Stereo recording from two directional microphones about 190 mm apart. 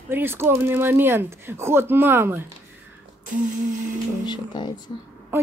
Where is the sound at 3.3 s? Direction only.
40° right (ahead or behind).